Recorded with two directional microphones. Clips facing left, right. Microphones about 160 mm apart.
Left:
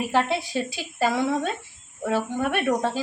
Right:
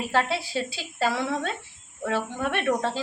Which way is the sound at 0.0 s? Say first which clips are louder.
Left 2 dB; 15° left (ahead or behind).